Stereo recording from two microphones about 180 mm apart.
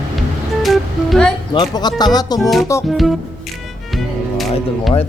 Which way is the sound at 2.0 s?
20° left (ahead or behind).